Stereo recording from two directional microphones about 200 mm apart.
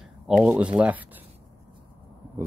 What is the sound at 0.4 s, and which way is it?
Speech, 5° right (ahead or behind).